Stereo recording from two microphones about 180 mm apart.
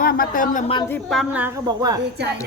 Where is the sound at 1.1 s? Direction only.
5° right (ahead or behind).